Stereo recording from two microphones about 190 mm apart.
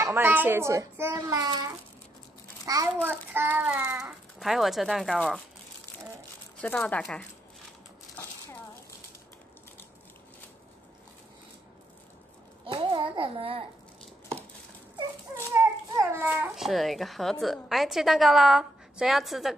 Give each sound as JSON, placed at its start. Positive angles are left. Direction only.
{"t": 0.0, "sound": "a child's voice", "side_deg": -10}
{"t": 6.6, "sound": "a woman's voice", "side_deg": 5}
{"t": 12.6, "sound": "a child's voice", "side_deg": -25}
{"t": 15.3, "sound": "a sound", "side_deg": -15}
{"t": 16.6, "sound": "a woman's voice", "side_deg": 0}